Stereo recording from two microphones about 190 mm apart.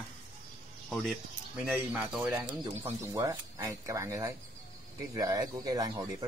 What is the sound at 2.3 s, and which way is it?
Speech, 15° right (ahead or behind).